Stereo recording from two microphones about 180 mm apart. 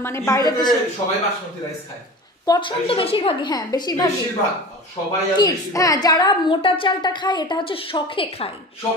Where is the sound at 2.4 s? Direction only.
25° left (ahead or behind).